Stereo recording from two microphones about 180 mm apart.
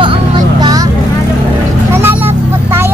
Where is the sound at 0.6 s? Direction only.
20° right (ahead or behind).